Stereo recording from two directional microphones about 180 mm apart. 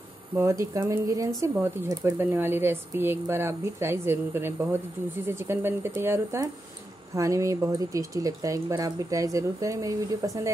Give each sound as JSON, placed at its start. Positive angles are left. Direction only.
{"t": 0.4, "sound": "speech", "side_deg": -15}